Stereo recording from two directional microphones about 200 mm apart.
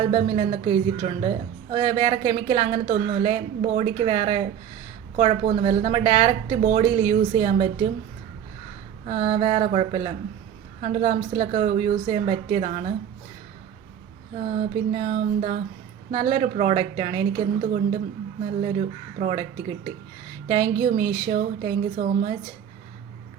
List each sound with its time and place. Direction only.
0.0 s speech: 30° right (ahead or behind)
9.0 s a woman's voice: 35° right (ahead or behind)
14.3 s a woman's voice: 35° right (ahead or behind)